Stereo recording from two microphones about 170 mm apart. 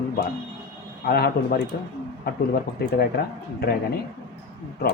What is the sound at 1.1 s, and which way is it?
Speech, 60° left (ahead or behind).